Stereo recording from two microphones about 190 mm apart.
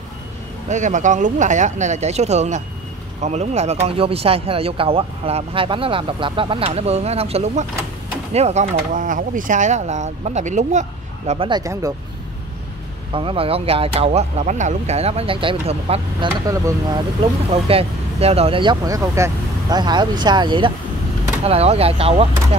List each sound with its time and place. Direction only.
0.7 s speech: 40° right (ahead or behind); by 11.9 s 20° right (ahead or behind)
13.1 s speech: 30° right (ahead or behind)
16.4 s speech: 20° right (ahead or behind)